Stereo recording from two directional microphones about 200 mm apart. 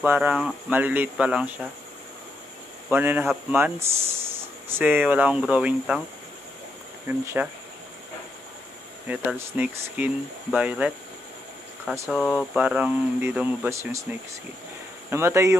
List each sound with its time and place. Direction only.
0.0 s speech: 10° right (ahead or behind)
2.9 s speech: 10° right (ahead or behind)
7.1 s speech: 10° right (ahead or behind)
9.0 s speech: 10° right (ahead or behind)
15.0 s speech: 15° right (ahead or behind)